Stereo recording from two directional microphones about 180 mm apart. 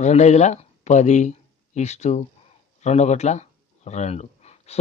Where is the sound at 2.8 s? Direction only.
40° left (ahead or behind).